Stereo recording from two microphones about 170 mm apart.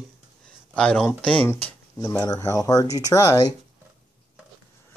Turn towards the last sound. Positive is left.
turn(degrees=20)  # may be behind; listen again after turning